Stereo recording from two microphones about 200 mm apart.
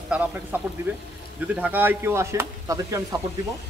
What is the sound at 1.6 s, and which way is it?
Speech, 10° right (ahead or behind).